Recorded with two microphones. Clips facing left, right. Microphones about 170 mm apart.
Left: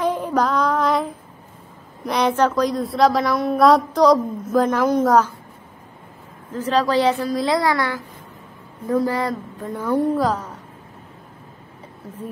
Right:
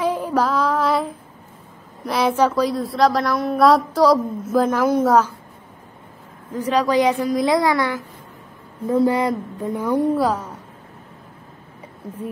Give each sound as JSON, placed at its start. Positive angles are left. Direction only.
{"t": 0.0, "sound": "child singing", "side_deg": -5}
{"t": 2.0, "sound": "a woman's voice", "side_deg": -5}
{"t": 6.5, "sound": "a woman's voice", "side_deg": -10}
{"t": 12.0, "sound": "speech", "side_deg": -15}